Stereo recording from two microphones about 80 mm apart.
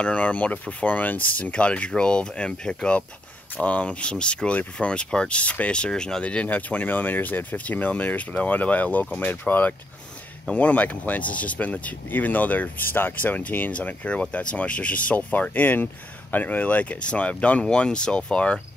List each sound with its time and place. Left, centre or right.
0.0 s speech: centre